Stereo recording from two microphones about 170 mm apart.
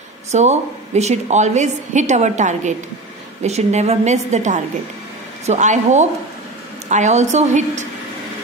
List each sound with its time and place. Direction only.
0.3 s a woman's voice: 40° right (ahead or behind)